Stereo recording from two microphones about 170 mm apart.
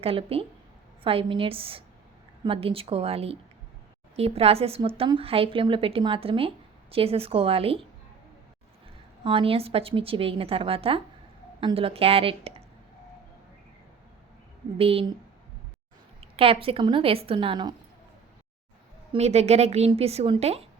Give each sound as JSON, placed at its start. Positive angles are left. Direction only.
{"t": 0.0, "sound": "a woman's voice", "side_deg": -35}
{"t": 9.2, "sound": "a woman's voice", "side_deg": -30}
{"t": 14.8, "sound": "a woman's voice", "side_deg": -35}
{"t": 16.3, "sound": "a woman's voice", "side_deg": -35}
{"t": 19.1, "sound": "a woman's voice", "side_deg": -40}